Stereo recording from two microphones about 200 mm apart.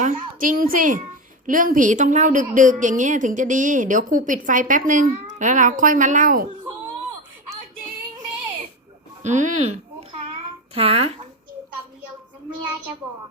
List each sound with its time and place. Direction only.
0.0 s a child's voice: 40° right (ahead or behind)
9.2 s a child's voice: 35° right (ahead or behind)